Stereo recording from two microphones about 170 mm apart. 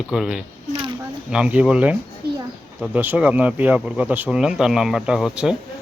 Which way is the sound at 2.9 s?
10° right (ahead or behind).